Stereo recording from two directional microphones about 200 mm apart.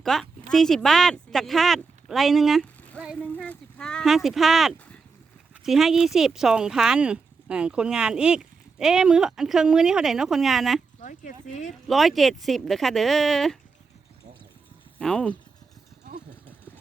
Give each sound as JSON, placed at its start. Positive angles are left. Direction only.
{"t": 0.0, "sound": "speech", "side_deg": 0}
{"t": 3.2, "sound": "a sound", "side_deg": 5}
{"t": 5.6, "sound": "speech", "side_deg": 0}
{"t": 11.0, "sound": "speech", "side_deg": 40}
{"t": 11.9, "sound": "speech", "side_deg": 0}
{"t": 14.9, "sound": "speech", "side_deg": 5}